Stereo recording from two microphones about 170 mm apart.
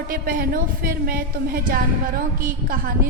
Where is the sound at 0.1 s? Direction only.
55° right (ahead or behind).